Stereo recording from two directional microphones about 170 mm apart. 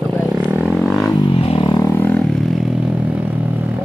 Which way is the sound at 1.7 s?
20° left (ahead or behind).